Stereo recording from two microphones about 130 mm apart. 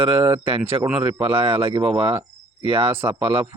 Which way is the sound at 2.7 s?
15° right (ahead or behind).